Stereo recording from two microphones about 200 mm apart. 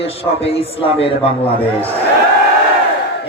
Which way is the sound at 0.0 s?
30° left (ahead or behind).